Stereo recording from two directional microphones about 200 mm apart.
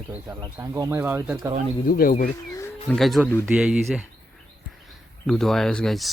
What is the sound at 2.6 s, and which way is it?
Speech, 10° left (ahead or behind).